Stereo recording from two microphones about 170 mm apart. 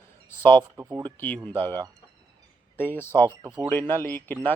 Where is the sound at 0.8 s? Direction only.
15° right (ahead or behind).